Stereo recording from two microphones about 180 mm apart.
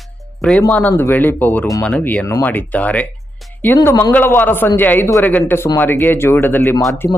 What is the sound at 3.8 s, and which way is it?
Speech, 20° left (ahead or behind).